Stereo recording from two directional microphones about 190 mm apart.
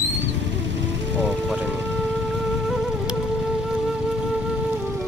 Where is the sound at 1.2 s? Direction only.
5° right (ahead or behind).